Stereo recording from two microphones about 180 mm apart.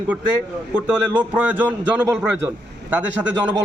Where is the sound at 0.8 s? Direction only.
10° right (ahead or behind).